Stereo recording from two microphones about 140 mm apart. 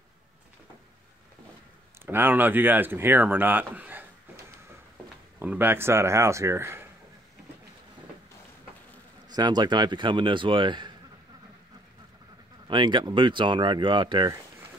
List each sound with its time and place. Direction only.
2.0 s speech: 15° right (ahead or behind)
5.4 s speech: 15° right (ahead or behind)
9.3 s speech: 30° right (ahead or behind)
12.6 s speech: 35° right (ahead or behind)